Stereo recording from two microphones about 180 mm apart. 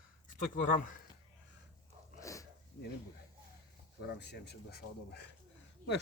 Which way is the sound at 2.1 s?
15° left (ahead or behind).